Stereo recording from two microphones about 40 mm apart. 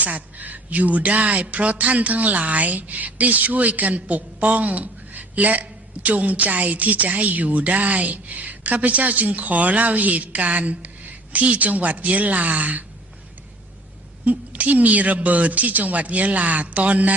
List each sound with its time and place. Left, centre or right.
0.0 s speech: right
14.3 s speech: right